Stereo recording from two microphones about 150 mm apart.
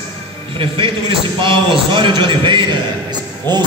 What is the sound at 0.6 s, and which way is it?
A man's voice, 35° right (ahead or behind).